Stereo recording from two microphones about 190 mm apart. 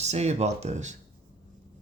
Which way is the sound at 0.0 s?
35° right (ahead or behind).